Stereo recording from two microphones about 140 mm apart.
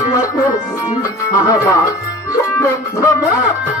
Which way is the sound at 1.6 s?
25° left (ahead or behind).